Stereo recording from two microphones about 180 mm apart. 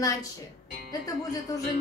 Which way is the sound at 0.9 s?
20° left (ahead or behind).